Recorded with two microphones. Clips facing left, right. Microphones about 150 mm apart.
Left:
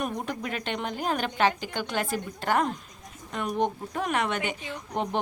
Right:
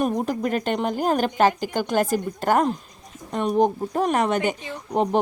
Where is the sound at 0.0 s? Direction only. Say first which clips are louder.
Right 8 dB; 40° right (ahead or behind).